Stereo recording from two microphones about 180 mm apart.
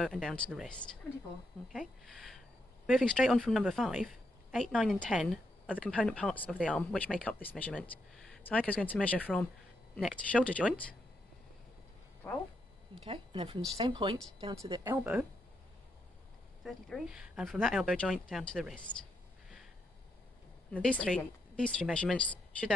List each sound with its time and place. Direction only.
0.0 s speech: centre (ahead or behind)
12.2 s speech: 10° left (ahead or behind)
12.9 s speech: 30° right (ahead or behind)
16.6 s speech: centre (ahead or behind)
20.7 s speech: 5° left (ahead or behind)